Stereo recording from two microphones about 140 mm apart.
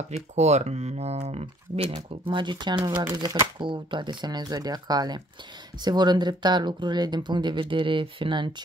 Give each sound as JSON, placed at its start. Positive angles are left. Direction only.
{"t": 0.1, "sound": "speech", "side_deg": -55}